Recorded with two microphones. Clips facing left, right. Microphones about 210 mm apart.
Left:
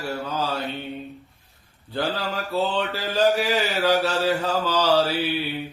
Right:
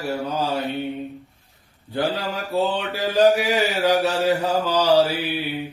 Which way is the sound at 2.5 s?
15° right (ahead or behind).